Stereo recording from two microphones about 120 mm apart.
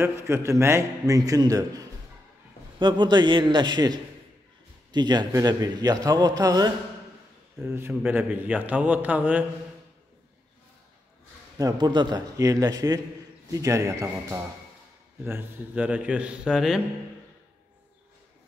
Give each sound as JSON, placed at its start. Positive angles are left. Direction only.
{"t": 0.0, "sound": "a man's voice", "side_deg": -20}
{"t": 7.6, "sound": "a man's voice", "side_deg": -20}
{"t": 11.5, "sound": "a man's voice", "side_deg": -35}